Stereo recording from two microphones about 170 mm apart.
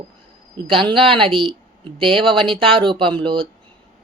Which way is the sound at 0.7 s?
30° right (ahead or behind).